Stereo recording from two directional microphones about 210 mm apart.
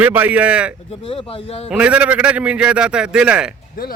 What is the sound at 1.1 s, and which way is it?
Speech, 25° left (ahead or behind).